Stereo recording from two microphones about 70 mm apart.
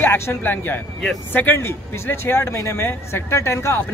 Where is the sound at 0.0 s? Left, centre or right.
Left.